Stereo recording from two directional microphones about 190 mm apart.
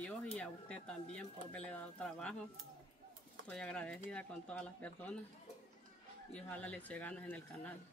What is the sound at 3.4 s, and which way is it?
Speech, 5° left (ahead or behind).